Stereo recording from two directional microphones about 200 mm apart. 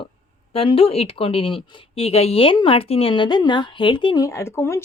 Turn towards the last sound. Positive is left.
turn(degrees=15)  # may be behind; listen again after turning